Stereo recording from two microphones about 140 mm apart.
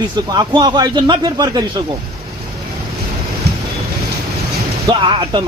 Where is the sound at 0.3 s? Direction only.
30° right (ahead or behind).